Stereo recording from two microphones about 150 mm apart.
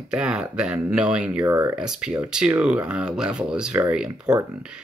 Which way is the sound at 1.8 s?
5° right (ahead or behind).